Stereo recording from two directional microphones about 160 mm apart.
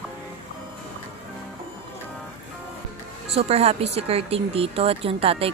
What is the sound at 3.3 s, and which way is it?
Speech, 40° right (ahead or behind).